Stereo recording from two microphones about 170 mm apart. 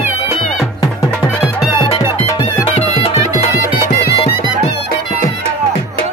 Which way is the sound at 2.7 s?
35° left (ahead or behind).